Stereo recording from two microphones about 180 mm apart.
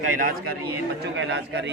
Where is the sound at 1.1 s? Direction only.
80° right.